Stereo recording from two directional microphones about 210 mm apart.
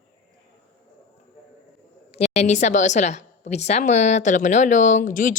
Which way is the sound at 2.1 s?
30° left (ahead or behind).